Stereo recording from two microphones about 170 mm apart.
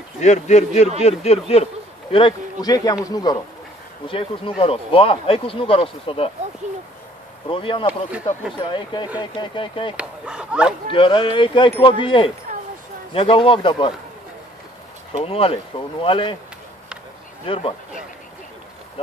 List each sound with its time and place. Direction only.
0.2 s a man's voice: 45° left (ahead or behind)
7.4 s speech: 30° left (ahead or behind)
9.9 s speech: 5° right (ahead or behind)
10.9 s speech: 30° left (ahead or behind)
12.5 s a sound: 50° right (ahead or behind)
13.1 s speech: 30° left (ahead or behind)
15.1 s speech: 35° left (ahead or behind)
17.5 s speech: 30° left (ahead or behind)